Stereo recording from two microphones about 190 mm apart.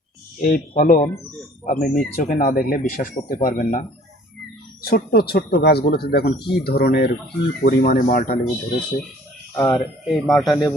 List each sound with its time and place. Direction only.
0.3 s speech: 40° left (ahead or behind)
4.9 s speech: 55° left (ahead or behind)
9.6 s speech: 20° left (ahead or behind)
10.2 s speech: centre (ahead or behind)
10.4 s speech: 20° left (ahead or behind)